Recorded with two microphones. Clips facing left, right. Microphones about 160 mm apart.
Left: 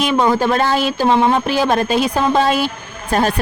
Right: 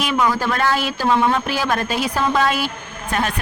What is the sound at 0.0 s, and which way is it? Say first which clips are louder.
Speech: left 4 dB; 25° left (ahead or behind).